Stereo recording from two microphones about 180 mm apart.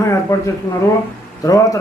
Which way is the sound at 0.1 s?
15° left (ahead or behind).